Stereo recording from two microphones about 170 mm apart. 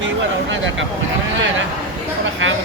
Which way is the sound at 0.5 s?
90° right.